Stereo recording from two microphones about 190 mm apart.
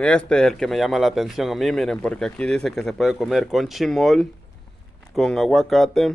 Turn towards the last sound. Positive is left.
turn(degrees=0)  # may be behind; listen again after turning